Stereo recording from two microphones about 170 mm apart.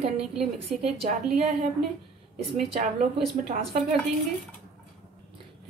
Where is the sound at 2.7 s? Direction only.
40° right (ahead or behind).